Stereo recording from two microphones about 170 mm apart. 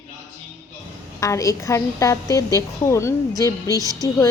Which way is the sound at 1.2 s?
20° left (ahead or behind).